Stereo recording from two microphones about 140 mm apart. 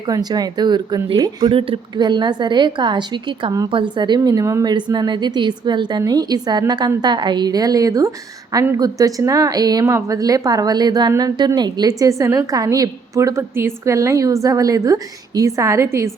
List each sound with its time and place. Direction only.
0.1 s a woman's voice: 30° right (ahead or behind)